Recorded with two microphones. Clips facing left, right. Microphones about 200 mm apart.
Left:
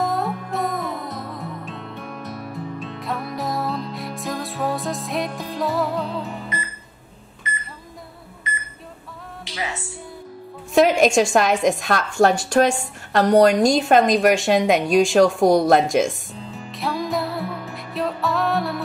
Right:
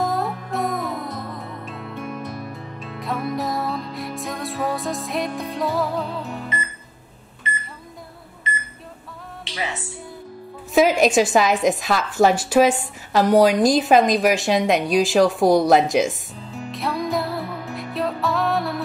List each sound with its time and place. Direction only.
0.0 s music: centre (ahead or behind)
10.7 s a woman's voice: centre (ahead or behind)